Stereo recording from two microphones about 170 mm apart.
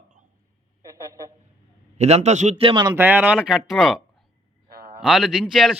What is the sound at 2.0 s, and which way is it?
Speech, 40° right (ahead or behind).